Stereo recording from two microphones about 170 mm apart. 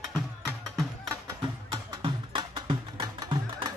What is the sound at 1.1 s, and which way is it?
Music, 25° right (ahead or behind).